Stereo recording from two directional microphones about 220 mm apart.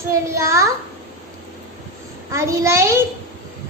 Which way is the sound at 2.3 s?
15° right (ahead or behind).